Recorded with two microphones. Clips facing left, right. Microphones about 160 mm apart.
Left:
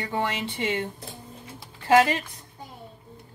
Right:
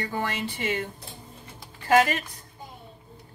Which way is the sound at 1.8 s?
30° left (ahead or behind).